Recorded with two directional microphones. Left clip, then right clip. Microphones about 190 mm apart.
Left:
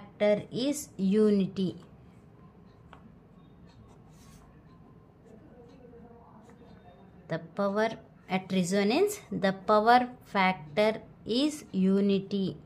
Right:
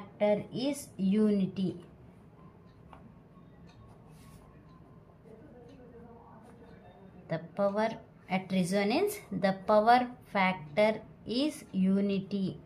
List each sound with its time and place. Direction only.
0.2 s a woman's voice: 35° left (ahead or behind)
7.2 s a woman's voice: 25° left (ahead or behind)